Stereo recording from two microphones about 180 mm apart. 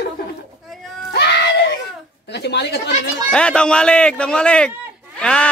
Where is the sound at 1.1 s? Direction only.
65° left (ahead or behind).